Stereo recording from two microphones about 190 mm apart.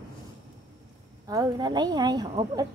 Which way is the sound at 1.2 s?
20° right (ahead or behind).